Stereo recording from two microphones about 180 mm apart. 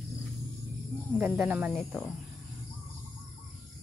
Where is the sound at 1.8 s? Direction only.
5° left (ahead or behind).